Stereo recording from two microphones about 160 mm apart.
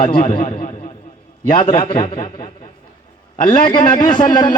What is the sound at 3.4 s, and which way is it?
A man's voice, 35° left (ahead or behind).